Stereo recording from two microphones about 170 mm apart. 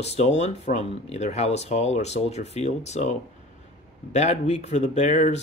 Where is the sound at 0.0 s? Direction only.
40° left (ahead or behind).